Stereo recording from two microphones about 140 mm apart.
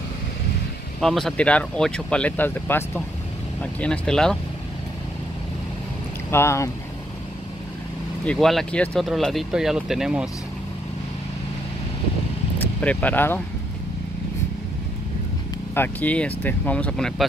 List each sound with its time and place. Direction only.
1.0 s speech: 5° left (ahead or behind)
3.8 s speech: 5° left (ahead or behind)
6.3 s speech: 20° left (ahead or behind)
8.3 s speech: centre (ahead or behind)
12.5 s vehicle: 10° left (ahead or behind)
15.7 s speech: 15° left (ahead or behind)